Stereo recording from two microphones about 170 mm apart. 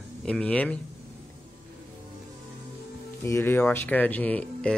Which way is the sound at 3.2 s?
15° left (ahead or behind).